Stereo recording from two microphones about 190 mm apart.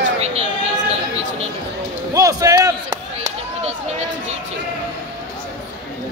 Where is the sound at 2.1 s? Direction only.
20° right (ahead or behind).